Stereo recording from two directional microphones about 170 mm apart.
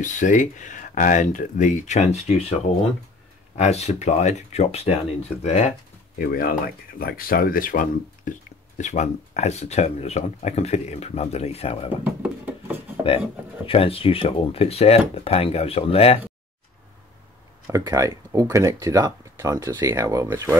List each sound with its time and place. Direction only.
0.0 s speech: 45° left (ahead or behind)
3.5 s speech: 40° left (ahead or behind)
6.1 s speech: 55° left (ahead or behind); by 11.9 s 35° left (ahead or behind)
12.0 s a sound: 10° right (ahead or behind)
13.7 s speech: 35° left (ahead or behind)
17.6 s speech: 20° right (ahead or behind)